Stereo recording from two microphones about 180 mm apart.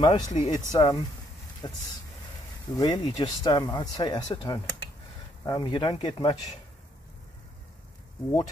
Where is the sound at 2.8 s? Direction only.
20° left (ahead or behind).